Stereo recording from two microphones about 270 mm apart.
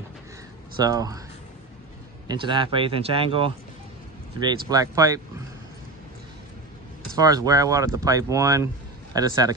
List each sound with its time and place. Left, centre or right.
0.7 s speech: centre
2.2 s speech: centre
4.6 s speech: centre
7.2 s speech: centre